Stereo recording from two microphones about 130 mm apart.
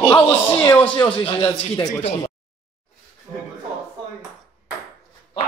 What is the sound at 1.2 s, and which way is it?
Speech, 45° left (ahead or behind).